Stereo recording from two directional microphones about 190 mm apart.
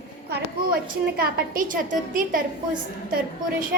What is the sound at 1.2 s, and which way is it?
A woman's voice, 45° right (ahead or behind).